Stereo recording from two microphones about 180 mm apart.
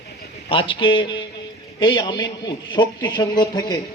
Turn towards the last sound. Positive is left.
turn(degrees=20)  # may be behind; listen again after turning